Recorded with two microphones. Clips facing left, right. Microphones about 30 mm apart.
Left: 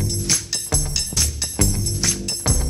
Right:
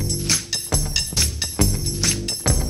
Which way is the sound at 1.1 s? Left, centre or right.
Right.